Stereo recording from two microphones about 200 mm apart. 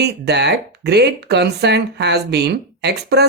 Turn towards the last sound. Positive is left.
turn(degrees=-55)  # may be behind; listen again after turning